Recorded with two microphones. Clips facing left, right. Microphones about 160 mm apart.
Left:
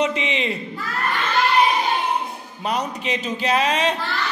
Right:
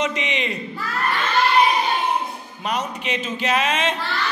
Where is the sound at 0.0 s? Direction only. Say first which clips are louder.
Left 2 dB; 30° left (ahead or behind).